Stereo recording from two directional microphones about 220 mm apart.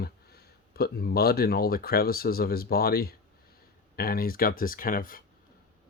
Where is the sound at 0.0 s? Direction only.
45° left (ahead or behind).